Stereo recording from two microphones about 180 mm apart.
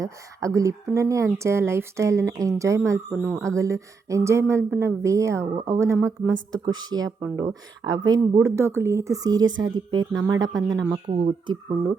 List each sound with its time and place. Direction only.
0.0 s a woman's voice: 15° right (ahead or behind)
9.5 s speech: 90° right
9.9 s speech: 20° right (ahead or behind)